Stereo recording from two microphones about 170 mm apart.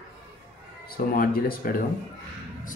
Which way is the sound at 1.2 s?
60° left (ahead or behind).